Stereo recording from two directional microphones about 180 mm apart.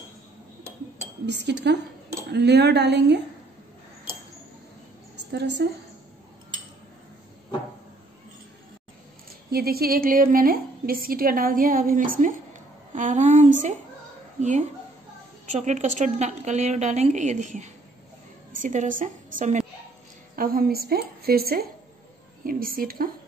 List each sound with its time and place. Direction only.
1.2 s a woman's voice: 70° right (ahead or behind)
5.3 s a woman's voice: 70° right (ahead or behind)
9.5 s a woman's voice: 60° right (ahead or behind)